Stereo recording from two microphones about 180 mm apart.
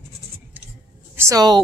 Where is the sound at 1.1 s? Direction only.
20° right (ahead or behind).